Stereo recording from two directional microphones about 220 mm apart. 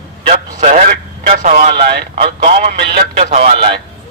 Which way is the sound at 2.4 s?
30° right (ahead or behind).